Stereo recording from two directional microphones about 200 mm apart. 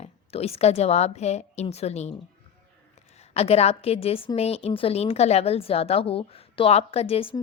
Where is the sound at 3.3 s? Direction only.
30° left (ahead or behind).